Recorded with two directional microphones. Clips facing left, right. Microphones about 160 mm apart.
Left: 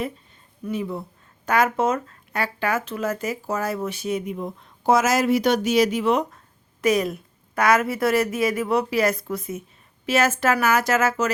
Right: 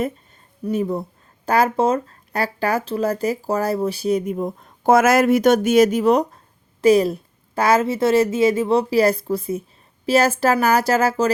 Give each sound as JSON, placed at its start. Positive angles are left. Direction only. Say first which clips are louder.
{"t": 0.6, "sound": "a woman's voice", "louder": "right 6 dB", "side_deg": -40}